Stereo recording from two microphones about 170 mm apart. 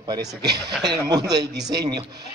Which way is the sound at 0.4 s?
75° right (ahead or behind).